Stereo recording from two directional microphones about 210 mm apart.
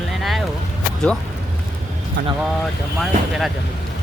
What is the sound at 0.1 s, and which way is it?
Vehicle, centre (ahead or behind).